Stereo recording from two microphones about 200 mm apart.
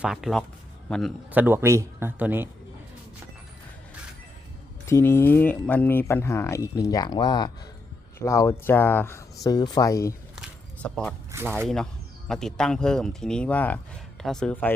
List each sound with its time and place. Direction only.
0.0 s a man's voice: centre (ahead or behind)
1.3 s speech: 10° right (ahead or behind)
4.9 s speech: 15° left (ahead or behind)
10.3 s a sound: centre (ahead or behind)
11.4 s speech: 5° left (ahead or behind)